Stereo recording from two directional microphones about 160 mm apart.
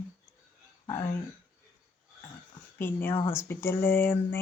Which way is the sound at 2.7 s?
15° left (ahead or behind).